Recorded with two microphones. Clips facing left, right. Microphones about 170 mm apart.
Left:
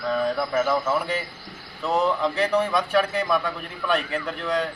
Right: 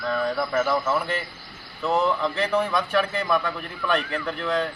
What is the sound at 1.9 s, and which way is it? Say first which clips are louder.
Speech: left 2 dB; 5° left (ahead or behind).